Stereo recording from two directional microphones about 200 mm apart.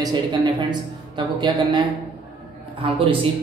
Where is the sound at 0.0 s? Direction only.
20° right (ahead or behind).